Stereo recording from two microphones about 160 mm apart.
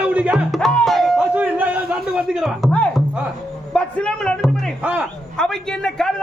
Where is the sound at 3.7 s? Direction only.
5° left (ahead or behind).